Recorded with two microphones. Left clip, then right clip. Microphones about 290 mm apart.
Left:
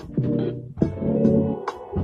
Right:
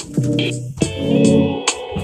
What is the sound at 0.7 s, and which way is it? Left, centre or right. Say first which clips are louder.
Music: right 6 dB; right.